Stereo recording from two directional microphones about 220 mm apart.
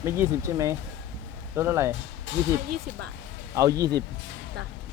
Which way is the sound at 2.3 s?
55° left (ahead or behind).